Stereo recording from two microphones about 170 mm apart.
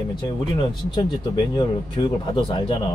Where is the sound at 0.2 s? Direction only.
25° left (ahead or behind).